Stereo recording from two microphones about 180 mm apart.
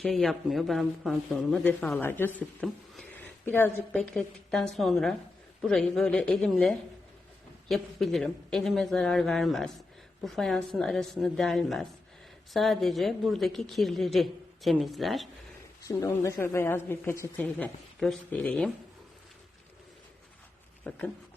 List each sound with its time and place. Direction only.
0.0 s a woman's voice: centre (ahead or behind)
15.8 s a woman's voice: 20° left (ahead or behind)
20.9 s a woman's voice: 5° left (ahead or behind)